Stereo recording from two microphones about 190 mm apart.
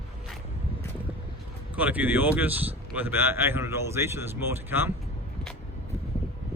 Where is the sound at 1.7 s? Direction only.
10° right (ahead or behind).